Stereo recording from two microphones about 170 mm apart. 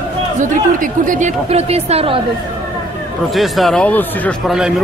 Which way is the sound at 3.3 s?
Centre (ahead or behind).